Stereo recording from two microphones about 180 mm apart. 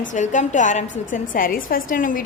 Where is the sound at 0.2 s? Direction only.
45° left (ahead or behind).